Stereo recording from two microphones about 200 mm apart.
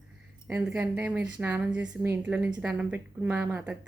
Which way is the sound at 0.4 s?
5° right (ahead or behind).